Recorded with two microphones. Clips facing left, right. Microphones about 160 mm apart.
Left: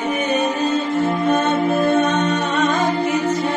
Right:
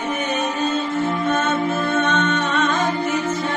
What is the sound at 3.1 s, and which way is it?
Music, 10° left (ahead or behind).